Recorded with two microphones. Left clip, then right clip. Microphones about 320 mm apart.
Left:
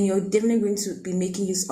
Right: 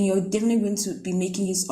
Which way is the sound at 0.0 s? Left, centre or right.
Centre.